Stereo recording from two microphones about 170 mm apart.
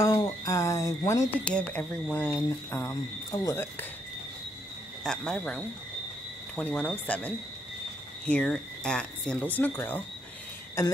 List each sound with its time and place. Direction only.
0.0 s speech: 20° left (ahead or behind)
1.4 s speech: 5° left (ahead or behind)
5.0 s speech: 5° left (ahead or behind)